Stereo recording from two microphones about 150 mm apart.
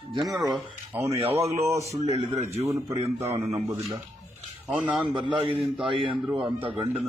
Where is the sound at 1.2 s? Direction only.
40° right (ahead or behind).